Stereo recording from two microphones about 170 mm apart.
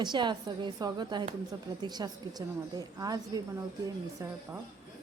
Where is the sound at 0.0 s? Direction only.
25° right (ahead or behind).